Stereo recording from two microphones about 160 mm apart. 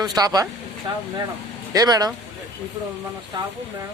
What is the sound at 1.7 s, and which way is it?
Speech, 25° right (ahead or behind).